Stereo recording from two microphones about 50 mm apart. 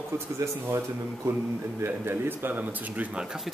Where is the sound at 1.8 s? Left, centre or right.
Right.